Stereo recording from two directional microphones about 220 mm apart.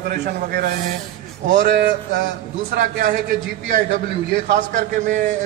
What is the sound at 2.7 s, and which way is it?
Speech, 40° right (ahead or behind).